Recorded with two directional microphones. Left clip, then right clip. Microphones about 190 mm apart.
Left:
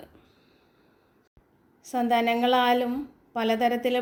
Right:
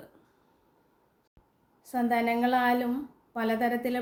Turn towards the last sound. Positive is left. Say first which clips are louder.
# left 4 dB
turn(degrees=10)  # may be behind; listen again after turning